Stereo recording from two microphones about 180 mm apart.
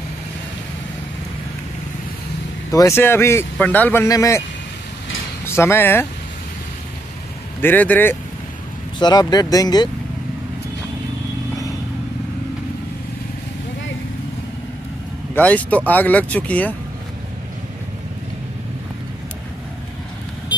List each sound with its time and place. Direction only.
2.7 s speech: 15° left (ahead or behind)
5.4 s speech: 15° left (ahead or behind)
7.6 s speech: 10° left (ahead or behind)
9.0 s speech: 20° left (ahead or behind)
15.3 s speech: 10° left (ahead or behind)